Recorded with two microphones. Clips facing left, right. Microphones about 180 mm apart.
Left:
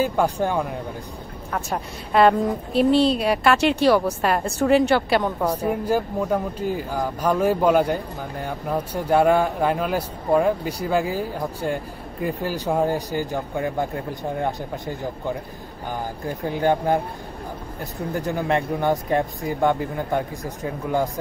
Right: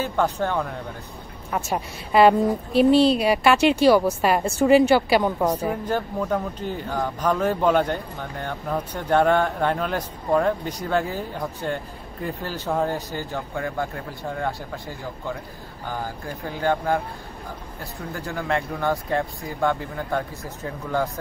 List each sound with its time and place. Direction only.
0.0 s speech: 10° left (ahead or behind)
1.5 s a woman's voice: 5° right (ahead or behind)
5.7 s speech: 10° left (ahead or behind)
18.1 s speech: 20° left (ahead or behind)